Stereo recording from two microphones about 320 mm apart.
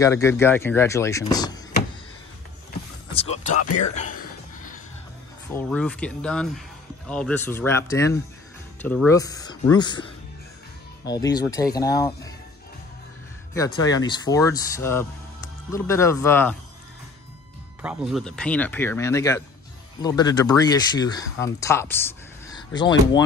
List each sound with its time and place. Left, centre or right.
0.0 s speech: centre
3.9 s music: left
5.5 s speech: centre
13.7 s speech: centre
17.8 s speech: centre